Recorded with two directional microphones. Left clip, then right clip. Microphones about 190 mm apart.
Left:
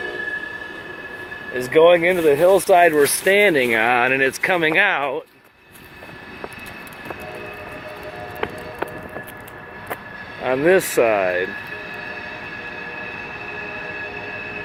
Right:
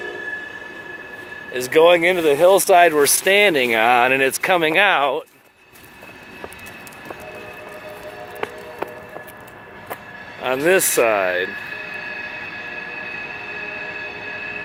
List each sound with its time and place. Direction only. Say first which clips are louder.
1.5 s speech: even; 15° right (ahead or behind)
10.4 s speech: even; 10° right (ahead or behind)